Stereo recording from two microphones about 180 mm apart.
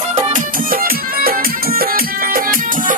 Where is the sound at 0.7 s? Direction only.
55° right (ahead or behind).